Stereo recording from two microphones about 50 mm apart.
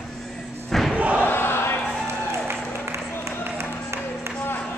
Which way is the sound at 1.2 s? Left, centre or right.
Left.